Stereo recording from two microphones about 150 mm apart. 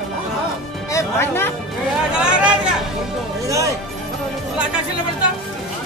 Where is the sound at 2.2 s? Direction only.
5° right (ahead or behind).